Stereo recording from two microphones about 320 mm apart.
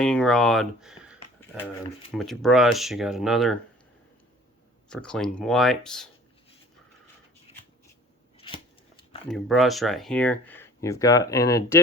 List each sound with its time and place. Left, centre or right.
0.0 s speech: centre
4.9 s speech: centre
7.5 s shuffling cards: centre
9.3 s speech: centre